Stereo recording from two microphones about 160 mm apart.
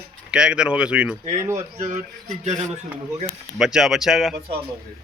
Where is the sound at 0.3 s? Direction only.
5° right (ahead or behind).